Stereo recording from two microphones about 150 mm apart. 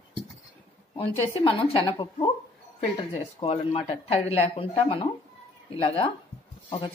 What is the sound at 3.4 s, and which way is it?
Speech, 45° left (ahead or behind).